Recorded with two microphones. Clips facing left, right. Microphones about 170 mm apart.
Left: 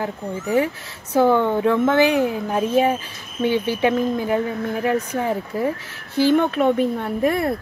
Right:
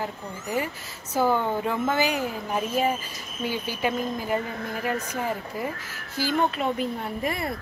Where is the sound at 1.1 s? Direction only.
65° left (ahead or behind).